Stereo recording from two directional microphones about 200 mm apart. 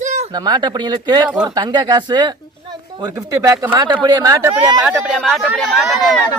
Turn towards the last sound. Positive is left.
turn(degrees=0)  # may be behind; listen again after turning